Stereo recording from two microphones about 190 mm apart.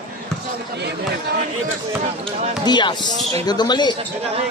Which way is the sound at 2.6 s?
25° left (ahead or behind).